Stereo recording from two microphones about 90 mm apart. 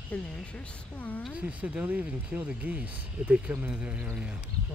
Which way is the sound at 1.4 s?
15° right (ahead or behind).